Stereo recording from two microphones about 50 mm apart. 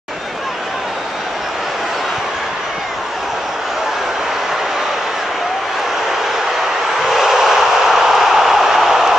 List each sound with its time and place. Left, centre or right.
7.1 s vehicle: centre